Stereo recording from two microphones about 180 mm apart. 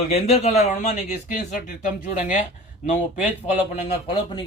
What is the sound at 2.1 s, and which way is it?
Speech, 45° left (ahead or behind).